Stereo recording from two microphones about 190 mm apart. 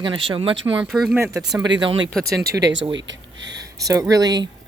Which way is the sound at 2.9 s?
70° right (ahead or behind).